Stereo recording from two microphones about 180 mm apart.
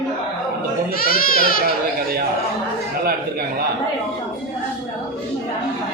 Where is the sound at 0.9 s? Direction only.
55° left (ahead or behind).